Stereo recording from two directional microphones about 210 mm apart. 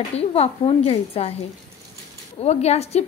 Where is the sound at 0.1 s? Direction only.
30° left (ahead or behind).